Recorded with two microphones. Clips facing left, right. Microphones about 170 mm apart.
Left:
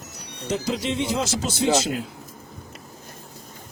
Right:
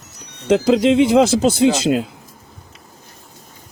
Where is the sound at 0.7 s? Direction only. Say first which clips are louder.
Right 14 dB; 90° right.